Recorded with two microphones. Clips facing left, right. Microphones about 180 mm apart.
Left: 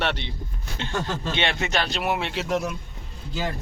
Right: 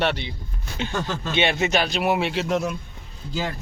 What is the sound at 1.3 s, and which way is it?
Speech, 10° right (ahead or behind).